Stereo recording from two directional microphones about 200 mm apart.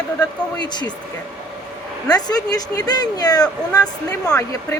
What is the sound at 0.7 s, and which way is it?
Speech, 20° left (ahead or behind).